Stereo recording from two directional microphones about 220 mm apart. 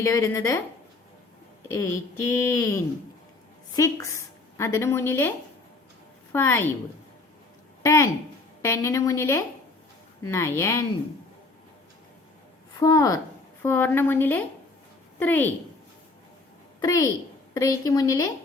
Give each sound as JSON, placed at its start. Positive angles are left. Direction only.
{"t": 0.0, "sound": "speech", "side_deg": 15}
{"t": 1.6, "sound": "speech", "side_deg": 10}
{"t": 6.3, "sound": "speech", "side_deg": 10}
{"t": 7.8, "sound": "speech", "side_deg": 15}
{"t": 12.8, "sound": "speech", "side_deg": 15}
{"t": 16.8, "sound": "speech", "side_deg": 15}